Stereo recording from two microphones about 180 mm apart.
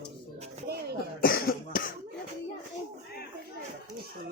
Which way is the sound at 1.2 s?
55° left (ahead or behind).